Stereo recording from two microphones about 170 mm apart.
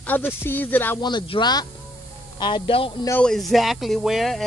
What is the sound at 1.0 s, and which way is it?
Speech, 25° left (ahead or behind).